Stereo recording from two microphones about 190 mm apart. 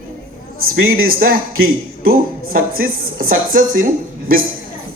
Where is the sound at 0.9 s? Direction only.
50° right (ahead or behind).